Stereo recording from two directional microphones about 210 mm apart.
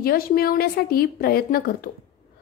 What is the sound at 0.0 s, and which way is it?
A woman's voice, 45° left (ahead or behind).